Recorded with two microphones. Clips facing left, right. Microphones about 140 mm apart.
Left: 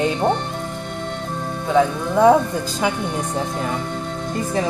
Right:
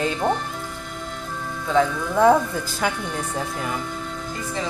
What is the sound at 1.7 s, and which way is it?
A woman's voice, 20° left (ahead or behind).